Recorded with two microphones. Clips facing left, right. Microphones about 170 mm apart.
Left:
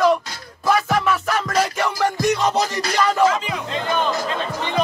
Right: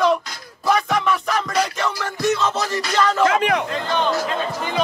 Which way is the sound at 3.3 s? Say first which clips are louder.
Right 5 dB; 65° right (ahead or behind).